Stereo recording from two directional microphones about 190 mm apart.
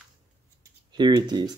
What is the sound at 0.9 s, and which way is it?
Speech, 20° right (ahead or behind).